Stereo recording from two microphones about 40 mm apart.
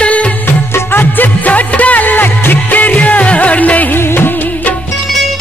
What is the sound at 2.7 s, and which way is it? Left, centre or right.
Music, left.